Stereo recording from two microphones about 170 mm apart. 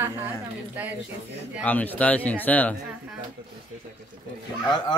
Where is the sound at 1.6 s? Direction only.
10° left (ahead or behind).